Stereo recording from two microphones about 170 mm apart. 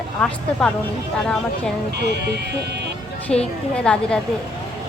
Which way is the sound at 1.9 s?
75° right (ahead or behind).